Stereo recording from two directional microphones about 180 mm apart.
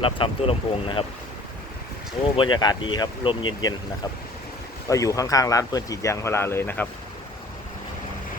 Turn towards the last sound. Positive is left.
turn(degrees=10)  # may be behind; listen again after turning